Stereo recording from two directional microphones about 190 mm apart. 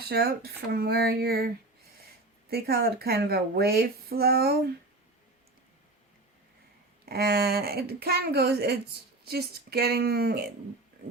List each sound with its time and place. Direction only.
0.1 s a woman's voice: 55° right (ahead or behind)
2.5 s a woman's voice: 55° right (ahead or behind)
7.0 s a woman's voice: 55° right (ahead or behind)